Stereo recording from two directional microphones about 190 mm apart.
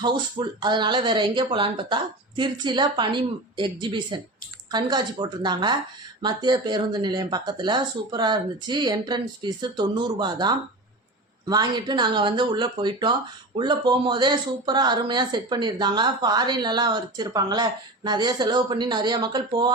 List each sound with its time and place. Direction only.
0.0 s speech: 25° right (ahead or behind)